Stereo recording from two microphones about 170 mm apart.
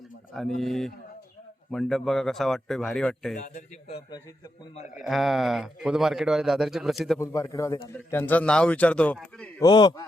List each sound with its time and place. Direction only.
0.3 s a man's voice: centre (ahead or behind)
3.8 s a man's voice: 30° left (ahead or behind)
4.9 s a man's voice: centre (ahead or behind)
7.2 s a man's voice: 20° left (ahead or behind)
9.6 s a man's voice: 25° left (ahead or behind)